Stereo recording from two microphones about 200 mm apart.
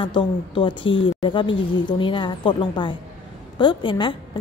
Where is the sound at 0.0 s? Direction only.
25° left (ahead or behind).